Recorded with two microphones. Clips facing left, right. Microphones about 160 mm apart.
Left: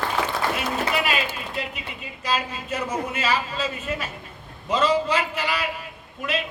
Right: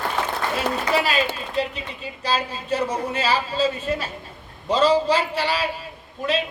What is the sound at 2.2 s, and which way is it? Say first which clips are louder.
Speech: right 2 dB; 30° right (ahead or behind).